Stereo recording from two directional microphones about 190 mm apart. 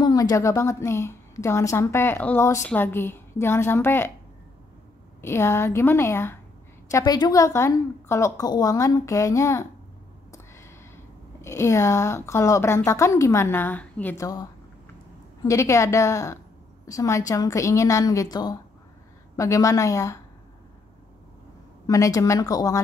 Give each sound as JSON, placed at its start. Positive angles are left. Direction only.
{"t": 0.0, "sound": "a woman's voice", "side_deg": 20}
{"t": 5.2, "sound": "a woman's voice", "side_deg": 15}
{"t": 10.3, "sound": "a sound", "side_deg": 15}
{"t": 11.4, "sound": "a woman's voice", "side_deg": 15}
{"t": 21.8, "sound": "a woman's voice", "side_deg": 15}